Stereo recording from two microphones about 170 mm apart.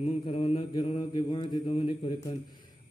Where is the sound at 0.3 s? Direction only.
30° left (ahead or behind).